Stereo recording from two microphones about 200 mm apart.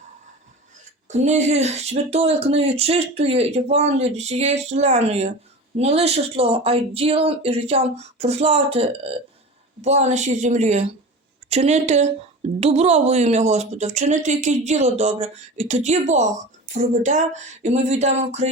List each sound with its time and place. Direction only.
1.0 s speech: 35° right (ahead or behind)